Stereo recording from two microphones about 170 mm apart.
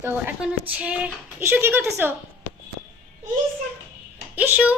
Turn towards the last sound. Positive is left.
turn(degrees=-10)  # may be behind; listen again after turning